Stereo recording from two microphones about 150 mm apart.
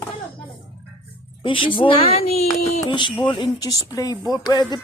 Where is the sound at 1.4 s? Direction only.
35° left (ahead or behind).